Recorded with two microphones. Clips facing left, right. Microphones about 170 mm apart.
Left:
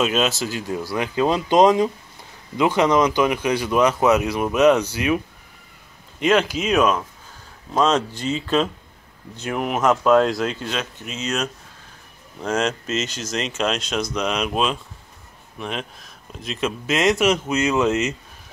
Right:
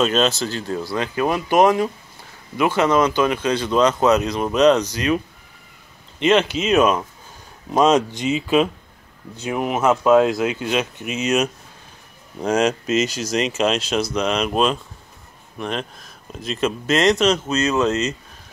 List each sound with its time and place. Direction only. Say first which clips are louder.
0.0 s speech: right 2 dB; 5° left (ahead or behind)
6.3 s speech: right 1 dB; 5° left (ahead or behind)
6.7 s speech: right 2 dB; 5° right (ahead or behind)
7.7 s speech: right 3 dB; 15° right (ahead or behind); by 18.1 s 10° left (ahead or behind)